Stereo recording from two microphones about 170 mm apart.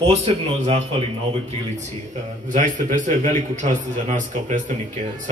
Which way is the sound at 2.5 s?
50° right (ahead or behind).